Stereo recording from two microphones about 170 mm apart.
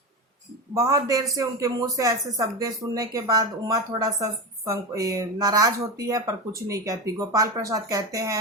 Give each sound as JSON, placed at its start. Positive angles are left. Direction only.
{"t": 0.7, "sound": "speech", "side_deg": -20}